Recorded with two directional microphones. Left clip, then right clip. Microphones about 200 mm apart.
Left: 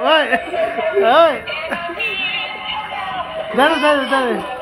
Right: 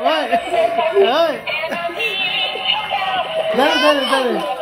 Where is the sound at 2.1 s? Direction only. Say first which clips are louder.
Right 2 dB; 35° right (ahead or behind).